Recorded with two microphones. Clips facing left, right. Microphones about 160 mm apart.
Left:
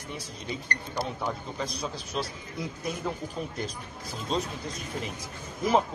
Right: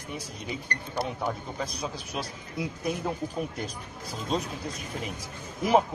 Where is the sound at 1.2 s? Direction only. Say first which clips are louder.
Right 1 dB; 10° right (ahead or behind).